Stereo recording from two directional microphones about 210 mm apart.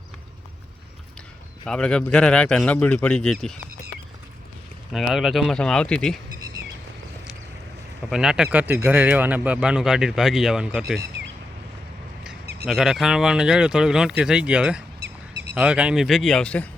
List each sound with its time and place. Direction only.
1.6 s speech: 5° left (ahead or behind)
4.9 s speech: centre (ahead or behind)
8.1 s speech: 5° right (ahead or behind)
12.2 s speech: centre (ahead or behind)
15.0 s duck: 55° right (ahead or behind)
15.5 s speech: 5° right (ahead or behind)